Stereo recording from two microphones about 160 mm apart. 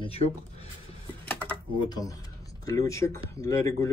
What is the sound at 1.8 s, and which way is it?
A man's voice, 25° left (ahead or behind).